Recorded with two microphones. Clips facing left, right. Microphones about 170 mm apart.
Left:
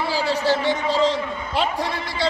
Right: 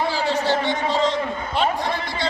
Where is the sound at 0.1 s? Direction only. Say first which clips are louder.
Even; 35° left (ahead or behind).